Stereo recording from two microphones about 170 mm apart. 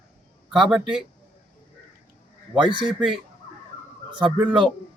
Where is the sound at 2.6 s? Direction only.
30° right (ahead or behind).